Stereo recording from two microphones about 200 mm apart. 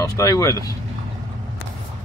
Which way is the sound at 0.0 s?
15° left (ahead or behind).